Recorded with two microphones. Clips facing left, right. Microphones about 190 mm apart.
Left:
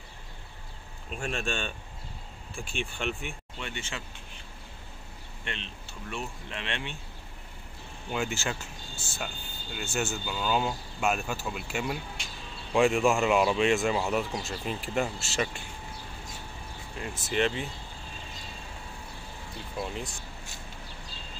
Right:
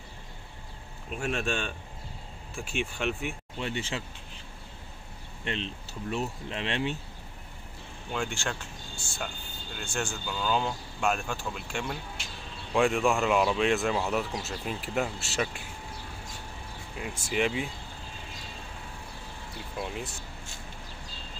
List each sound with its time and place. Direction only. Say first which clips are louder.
1.1 s speech: right 2 dB; 5° right (ahead or behind)
3.5 s speech: right 6 dB; 35° right (ahead or behind)
5.4 s speech: right 6 dB; 35° right (ahead or behind)
8.1 s speech: left 1 dB; 5° left (ahead or behind)
17.2 s speech: even; 10° right (ahead or behind)
19.8 s speech: even; 5° right (ahead or behind)